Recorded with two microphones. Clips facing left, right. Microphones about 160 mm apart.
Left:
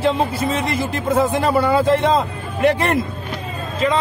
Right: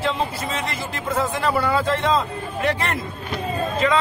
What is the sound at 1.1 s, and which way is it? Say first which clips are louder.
Speech: left 5 dB; 20° left (ahead or behind).